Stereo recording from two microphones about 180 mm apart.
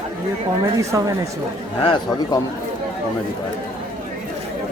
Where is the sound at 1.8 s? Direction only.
30° left (ahead or behind).